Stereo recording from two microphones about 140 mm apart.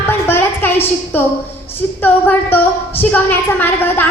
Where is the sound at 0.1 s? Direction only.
15° left (ahead or behind).